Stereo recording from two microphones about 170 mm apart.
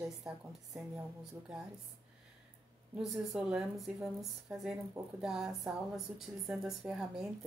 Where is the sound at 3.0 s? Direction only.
Centre (ahead or behind).